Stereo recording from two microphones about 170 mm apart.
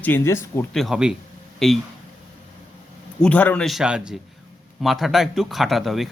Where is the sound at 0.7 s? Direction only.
5° right (ahead or behind).